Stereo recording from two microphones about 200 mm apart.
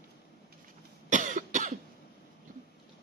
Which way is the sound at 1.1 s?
40° right (ahead or behind).